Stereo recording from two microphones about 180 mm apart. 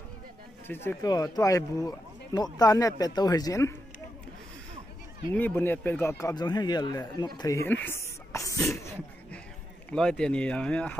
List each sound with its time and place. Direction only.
0.7 s speech: 15° left (ahead or behind)
5.3 s speech: 10° left (ahead or behind)
8.6 s sneeze: 15° left (ahead or behind)
9.8 s speech: 5° left (ahead or behind)